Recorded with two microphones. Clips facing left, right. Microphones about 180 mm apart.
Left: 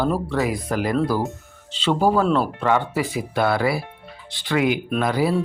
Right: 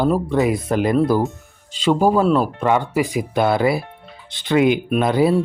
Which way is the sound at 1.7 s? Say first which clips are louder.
Right 3 dB; 15° right (ahead or behind).